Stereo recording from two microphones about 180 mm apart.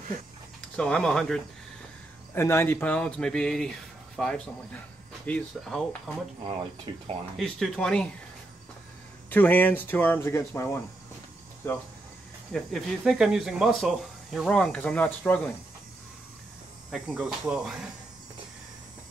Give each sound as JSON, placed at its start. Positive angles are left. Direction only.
{"t": 0.7, "sound": "speech", "side_deg": 5}
{"t": 2.3, "sound": "speech", "side_deg": 15}
{"t": 6.9, "sound": "speech", "side_deg": -25}
{"t": 7.3, "sound": "speech", "side_deg": 0}
{"t": 9.3, "sound": "speech", "side_deg": 10}
{"t": 12.5, "sound": "speech", "side_deg": 0}
{"t": 16.9, "sound": "speech", "side_deg": -5}